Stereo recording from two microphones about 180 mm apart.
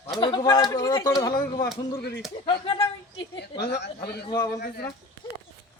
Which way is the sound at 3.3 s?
65° left (ahead or behind).